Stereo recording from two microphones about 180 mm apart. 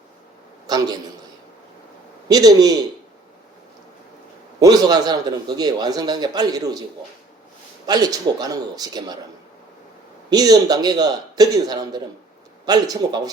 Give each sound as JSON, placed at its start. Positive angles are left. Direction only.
{"t": 0.7, "sound": "a man's voice", "side_deg": -20}
{"t": 2.2, "sound": "a man's voice", "side_deg": -20}
{"t": 4.6, "sound": "a man's voice", "side_deg": -20}
{"t": 7.9, "sound": "a man's voice", "side_deg": -20}
{"t": 10.2, "sound": "a man's voice", "side_deg": -20}